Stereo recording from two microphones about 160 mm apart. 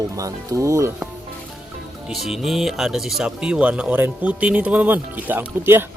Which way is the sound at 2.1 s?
Centre (ahead or behind).